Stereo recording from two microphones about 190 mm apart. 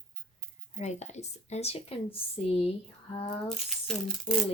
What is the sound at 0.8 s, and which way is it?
Speech, 35° left (ahead or behind).